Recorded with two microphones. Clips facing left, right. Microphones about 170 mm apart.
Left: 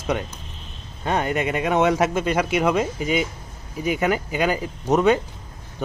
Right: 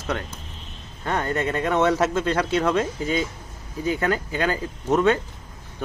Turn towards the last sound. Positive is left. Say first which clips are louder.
# left 2 dB
turn(degrees=15)  # may be behind; listen again after turning